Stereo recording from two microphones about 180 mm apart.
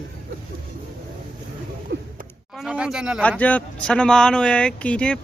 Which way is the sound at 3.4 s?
10° left (ahead or behind).